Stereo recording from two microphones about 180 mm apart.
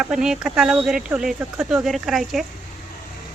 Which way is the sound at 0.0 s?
5° right (ahead or behind).